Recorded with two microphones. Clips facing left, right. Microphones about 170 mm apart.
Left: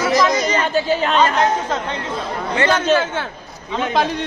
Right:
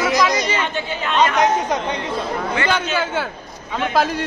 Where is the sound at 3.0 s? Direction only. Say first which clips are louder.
Right 1 dB; 10° right (ahead or behind).